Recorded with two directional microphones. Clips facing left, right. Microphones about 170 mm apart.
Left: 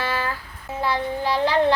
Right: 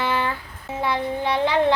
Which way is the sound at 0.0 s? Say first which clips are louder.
Right 2 dB; 20° right (ahead or behind).